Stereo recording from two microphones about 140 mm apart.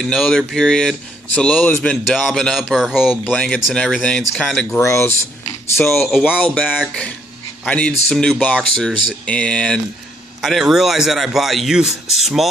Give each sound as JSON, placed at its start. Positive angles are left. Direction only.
{"t": 0.0, "sound": "speech", "side_deg": 5}
{"t": 4.6, "sound": "speech", "side_deg": 20}
{"t": 6.0, "sound": "speech", "side_deg": -5}
{"t": 6.9, "sound": "speech", "side_deg": 10}